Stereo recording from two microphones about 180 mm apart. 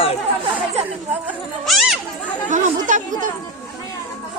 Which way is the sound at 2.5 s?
45° right (ahead or behind).